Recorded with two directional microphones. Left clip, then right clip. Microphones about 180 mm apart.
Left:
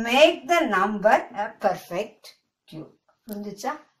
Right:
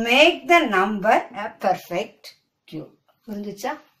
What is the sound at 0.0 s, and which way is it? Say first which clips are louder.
A woman's voice: right 2 dB; 15° right (ahead or behind).